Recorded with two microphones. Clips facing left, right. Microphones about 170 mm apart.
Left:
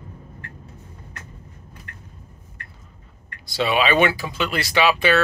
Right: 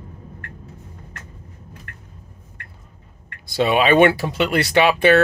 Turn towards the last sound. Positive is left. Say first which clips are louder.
# right 4 dB
turn(degrees=-55)  # may be behind; listen again after turning